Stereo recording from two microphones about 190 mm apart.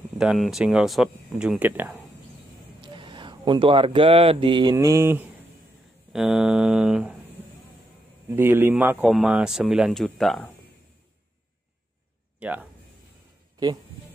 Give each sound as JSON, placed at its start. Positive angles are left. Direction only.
{"t": 0.2, "sound": "speech", "side_deg": 0}
{"t": 2.8, "sound": "speech", "side_deg": -25}
{"t": 4.7, "sound": "speech", "side_deg": -15}
{"t": 8.3, "sound": "speech", "side_deg": -10}
{"t": 12.4, "sound": "speech", "side_deg": -10}